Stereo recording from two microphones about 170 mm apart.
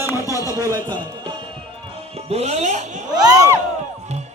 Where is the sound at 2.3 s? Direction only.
40° right (ahead or behind).